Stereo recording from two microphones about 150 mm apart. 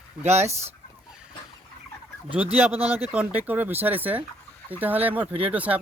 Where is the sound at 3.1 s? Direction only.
10° right (ahead or behind).